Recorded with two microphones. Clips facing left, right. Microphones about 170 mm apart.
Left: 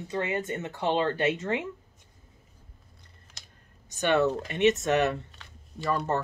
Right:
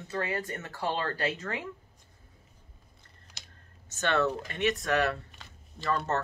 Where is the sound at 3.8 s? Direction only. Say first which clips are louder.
Left 4 dB; 15° left (ahead or behind).